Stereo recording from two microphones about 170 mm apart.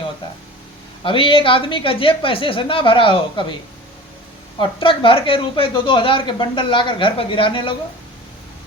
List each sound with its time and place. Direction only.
1.0 s a woman's voice: 30° left (ahead or behind)
4.5 s speech: 30° left (ahead or behind)